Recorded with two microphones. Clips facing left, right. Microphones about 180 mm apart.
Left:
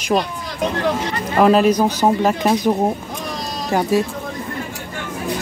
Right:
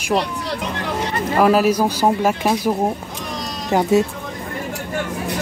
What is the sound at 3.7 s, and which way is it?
Speech, 20° right (ahead or behind).